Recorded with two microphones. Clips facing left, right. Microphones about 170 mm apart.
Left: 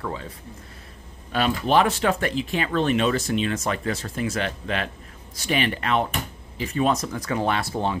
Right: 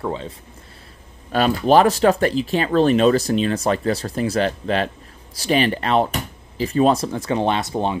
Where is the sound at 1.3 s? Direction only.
40° right (ahead or behind).